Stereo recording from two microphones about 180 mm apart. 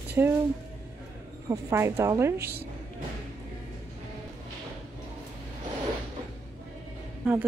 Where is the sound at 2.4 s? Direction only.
60° right (ahead or behind).